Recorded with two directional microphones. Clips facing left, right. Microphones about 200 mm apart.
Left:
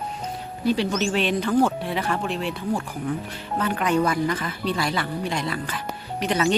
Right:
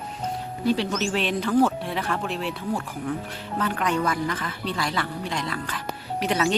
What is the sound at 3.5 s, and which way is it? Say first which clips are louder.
Speech: left 3 dB; 5° left (ahead or behind).